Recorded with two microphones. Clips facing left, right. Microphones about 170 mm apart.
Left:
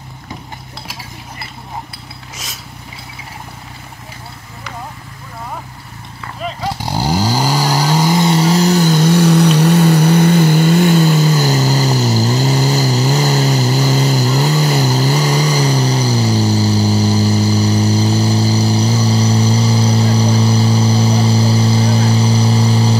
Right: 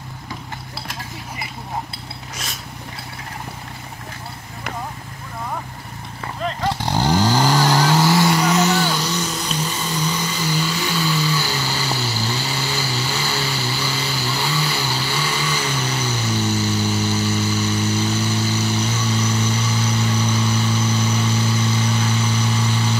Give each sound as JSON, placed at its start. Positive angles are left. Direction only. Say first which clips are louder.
{"t": 6.4, "sound": "vehicle", "louder": "left 1 dB", "side_deg": 10}